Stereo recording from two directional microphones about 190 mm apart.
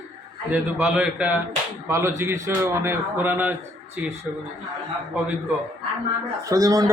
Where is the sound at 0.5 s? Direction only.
5° right (ahead or behind).